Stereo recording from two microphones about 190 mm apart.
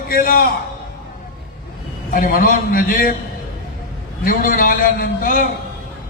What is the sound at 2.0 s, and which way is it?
A man's voice, 45° left (ahead or behind).